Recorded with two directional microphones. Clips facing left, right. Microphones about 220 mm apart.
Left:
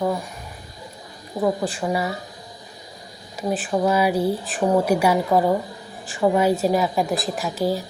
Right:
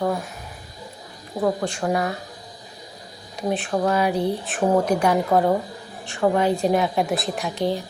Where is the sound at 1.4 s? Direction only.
5° left (ahead or behind).